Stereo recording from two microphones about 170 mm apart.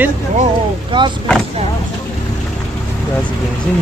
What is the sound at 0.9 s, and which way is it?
Speech, 30° right (ahead or behind).